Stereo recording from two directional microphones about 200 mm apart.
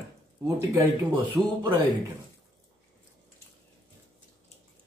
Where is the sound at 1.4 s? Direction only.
20° right (ahead or behind).